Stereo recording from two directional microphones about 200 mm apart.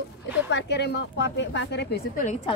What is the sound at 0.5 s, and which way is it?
Speech, 60° left (ahead or behind).